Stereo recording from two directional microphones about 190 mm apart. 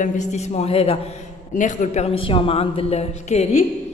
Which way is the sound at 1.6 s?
40° left (ahead or behind).